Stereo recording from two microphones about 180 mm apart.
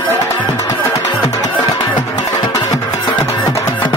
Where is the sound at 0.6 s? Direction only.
20° left (ahead or behind).